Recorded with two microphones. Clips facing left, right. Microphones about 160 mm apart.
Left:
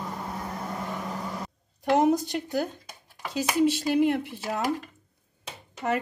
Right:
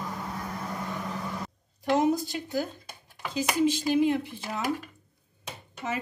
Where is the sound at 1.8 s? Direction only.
60° left (ahead or behind).